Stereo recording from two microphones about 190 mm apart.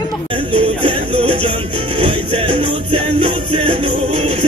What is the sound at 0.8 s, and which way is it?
Music, 30° right (ahead or behind).